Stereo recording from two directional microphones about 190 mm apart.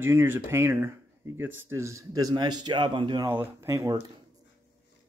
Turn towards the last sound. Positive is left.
turn(degrees=-20)  # may be behind; listen again after turning